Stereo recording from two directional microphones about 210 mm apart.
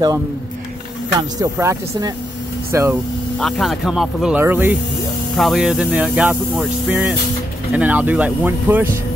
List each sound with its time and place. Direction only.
1.4 s speech: 15° right (ahead or behind)
3.3 s speech: centre (ahead or behind)